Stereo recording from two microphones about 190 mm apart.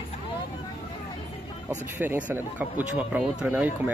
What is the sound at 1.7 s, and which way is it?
Speech, 10° right (ahead or behind).